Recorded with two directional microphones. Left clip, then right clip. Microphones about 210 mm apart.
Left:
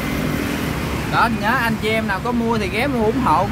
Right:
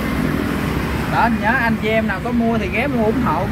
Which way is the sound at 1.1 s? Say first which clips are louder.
Right 1 dB; 25° left (ahead or behind).